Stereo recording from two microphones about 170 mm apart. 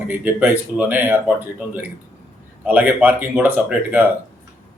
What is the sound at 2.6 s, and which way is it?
Speech, 10° right (ahead or behind).